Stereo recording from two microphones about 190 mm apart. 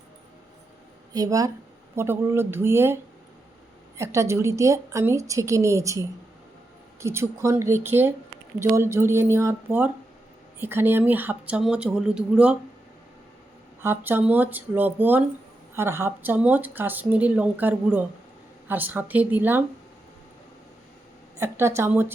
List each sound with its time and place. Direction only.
1.1 s speech: 20° right (ahead or behind)
13.8 s speech: 10° right (ahead or behind)
21.3 s speech: 15° right (ahead or behind)